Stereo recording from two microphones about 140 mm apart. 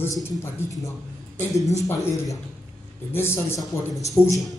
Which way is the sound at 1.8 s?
20° left (ahead or behind).